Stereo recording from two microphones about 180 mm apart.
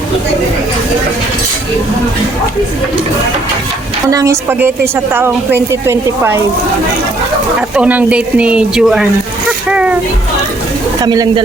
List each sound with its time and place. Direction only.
4.1 s speech: 15° right (ahead or behind)
7.8 s speech: 5° right (ahead or behind)
11.0 s speech: 20° right (ahead or behind)